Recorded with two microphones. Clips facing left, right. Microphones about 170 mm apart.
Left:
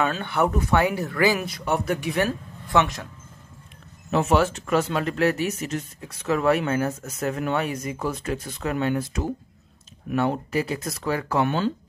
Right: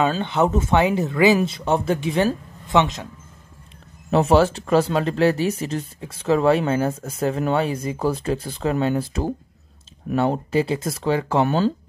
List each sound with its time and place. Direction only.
0.0 s speech: 20° right (ahead or behind)
4.1 s speech: 30° right (ahead or behind)
11.4 s speech: 35° right (ahead or behind)